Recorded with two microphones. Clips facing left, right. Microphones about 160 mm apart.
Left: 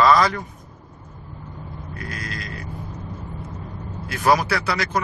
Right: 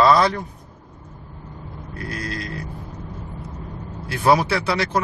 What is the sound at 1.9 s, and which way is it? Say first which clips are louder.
Vehicle: right 4 dB; 30° right (ahead or behind).